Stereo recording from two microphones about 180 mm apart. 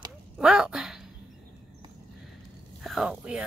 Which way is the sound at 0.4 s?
5° right (ahead or behind).